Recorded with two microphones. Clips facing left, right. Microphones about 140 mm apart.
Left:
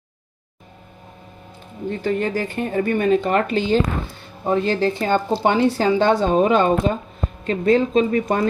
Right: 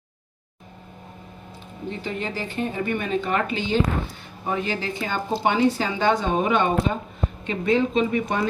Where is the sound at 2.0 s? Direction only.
50° left (ahead or behind).